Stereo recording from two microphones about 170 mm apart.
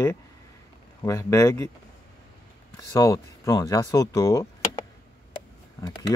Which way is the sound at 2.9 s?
20° left (ahead or behind).